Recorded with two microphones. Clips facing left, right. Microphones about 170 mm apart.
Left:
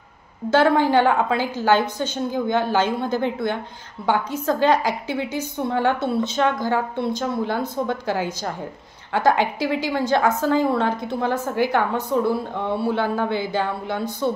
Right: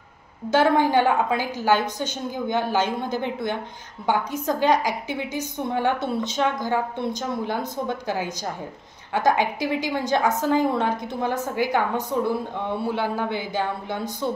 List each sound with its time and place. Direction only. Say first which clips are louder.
0.5 s a woman's voice: left 2 dB; 15° right (ahead or behind)
12.9 s a woman's voice: left 3 dB; 15° right (ahead or behind)